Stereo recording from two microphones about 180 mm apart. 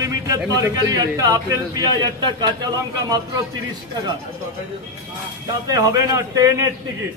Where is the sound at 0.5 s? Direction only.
20° right (ahead or behind).